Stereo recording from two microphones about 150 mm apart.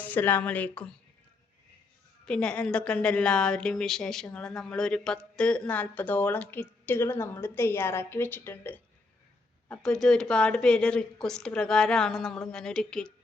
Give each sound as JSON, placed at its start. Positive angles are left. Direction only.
{"t": 0.0, "sound": "a woman's voice", "side_deg": 10}
{"t": 2.2, "sound": "a woman's voice", "side_deg": 5}